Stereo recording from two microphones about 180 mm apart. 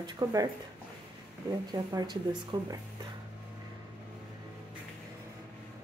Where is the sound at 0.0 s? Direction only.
20° right (ahead or behind).